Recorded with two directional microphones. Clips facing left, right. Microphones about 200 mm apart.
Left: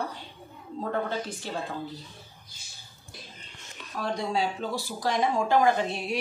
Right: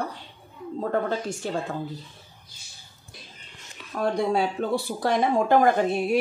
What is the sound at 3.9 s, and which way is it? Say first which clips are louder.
Speech: right 5 dB; 55° right (ahead or behind).